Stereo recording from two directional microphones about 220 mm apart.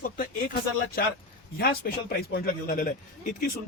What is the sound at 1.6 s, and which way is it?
Speech, 45° left (ahead or behind).